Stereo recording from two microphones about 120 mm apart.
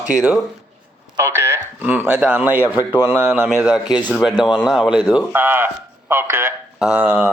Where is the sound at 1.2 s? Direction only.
20° right (ahead or behind).